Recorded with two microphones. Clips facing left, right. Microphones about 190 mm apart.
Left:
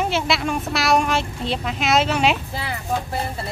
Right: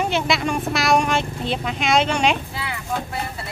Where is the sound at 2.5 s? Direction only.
35° left (ahead or behind).